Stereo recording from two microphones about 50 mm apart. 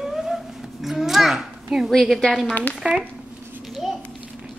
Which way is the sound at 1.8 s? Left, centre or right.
Centre.